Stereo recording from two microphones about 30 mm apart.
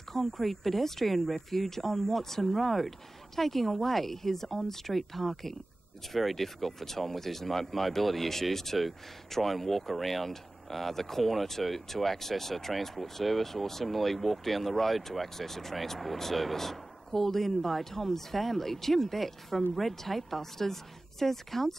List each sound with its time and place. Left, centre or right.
0.1 s speech: centre